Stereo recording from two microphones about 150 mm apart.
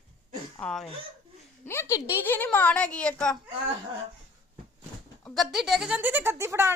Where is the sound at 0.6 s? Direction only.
5° left (ahead or behind).